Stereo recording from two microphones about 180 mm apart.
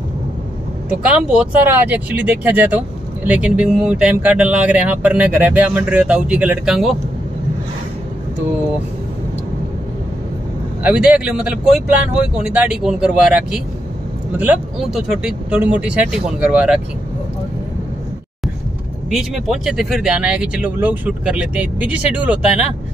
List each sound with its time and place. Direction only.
0.8 s speech: 5° right (ahead or behind)
10.8 s speech: 5° right (ahead or behind)
19.0 s speech: centre (ahead or behind)